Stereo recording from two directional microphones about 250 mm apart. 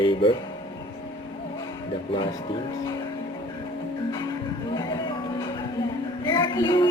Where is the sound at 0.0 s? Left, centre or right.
Centre.